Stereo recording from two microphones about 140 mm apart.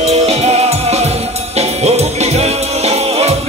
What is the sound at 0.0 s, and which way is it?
Music, 50° right (ahead or behind).